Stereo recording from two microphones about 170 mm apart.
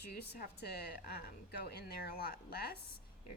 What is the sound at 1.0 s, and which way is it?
A woman's voice, 60° left (ahead or behind).